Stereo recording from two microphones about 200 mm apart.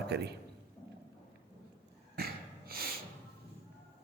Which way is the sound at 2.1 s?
50° right (ahead or behind).